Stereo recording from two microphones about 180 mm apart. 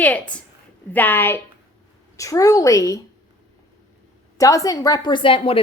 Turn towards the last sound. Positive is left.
turn(degrees=30)  # may be behind; listen again after turning